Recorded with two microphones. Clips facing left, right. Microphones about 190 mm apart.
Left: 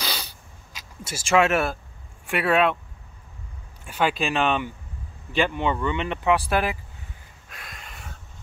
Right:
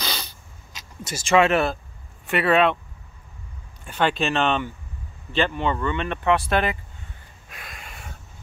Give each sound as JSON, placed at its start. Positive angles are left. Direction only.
{"t": 0.0, "sound": "a sound", "side_deg": 5}
{"t": 0.7, "sound": "speech", "side_deg": 5}
{"t": 3.8, "sound": "speech", "side_deg": 5}
{"t": 7.4, "sound": "snort", "side_deg": -5}